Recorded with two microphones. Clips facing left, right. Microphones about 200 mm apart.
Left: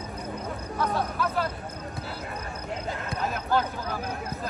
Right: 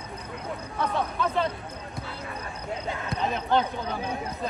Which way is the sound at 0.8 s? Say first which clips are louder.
Even; 5° left (ahead or behind).